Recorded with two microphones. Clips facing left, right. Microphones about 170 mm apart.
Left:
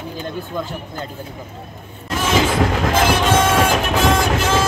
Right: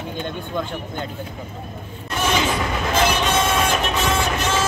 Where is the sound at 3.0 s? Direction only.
90° left.